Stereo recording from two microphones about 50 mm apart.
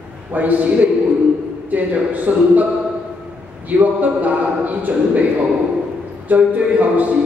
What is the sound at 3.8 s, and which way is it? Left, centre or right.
Speech, right.